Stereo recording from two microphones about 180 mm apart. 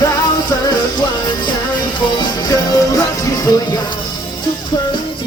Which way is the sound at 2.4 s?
20° left (ahead or behind).